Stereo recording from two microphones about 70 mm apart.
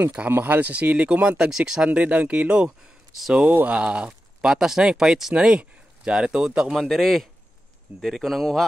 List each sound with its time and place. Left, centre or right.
0.3 s speech: right
1.5 s speech: centre
1.9 s speech: right
6.8 s speech: centre